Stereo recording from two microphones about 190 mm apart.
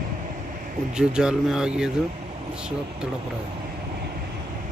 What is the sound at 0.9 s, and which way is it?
Speech, 5° right (ahead or behind).